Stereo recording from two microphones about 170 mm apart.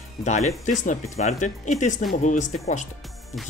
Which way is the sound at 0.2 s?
40° left (ahead or behind).